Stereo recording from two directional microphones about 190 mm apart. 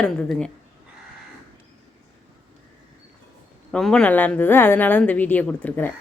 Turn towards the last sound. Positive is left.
turn(degrees=10)  # may be behind; listen again after turning